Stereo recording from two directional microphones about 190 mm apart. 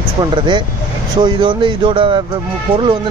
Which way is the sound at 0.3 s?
25° right (ahead or behind).